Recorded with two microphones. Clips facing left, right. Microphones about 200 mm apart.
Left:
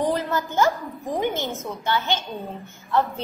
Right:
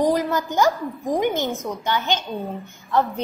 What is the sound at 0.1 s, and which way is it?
A woman's voice, 15° right (ahead or behind).